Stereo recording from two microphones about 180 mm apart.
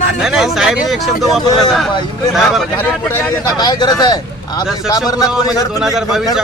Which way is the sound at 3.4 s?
25° left (ahead or behind).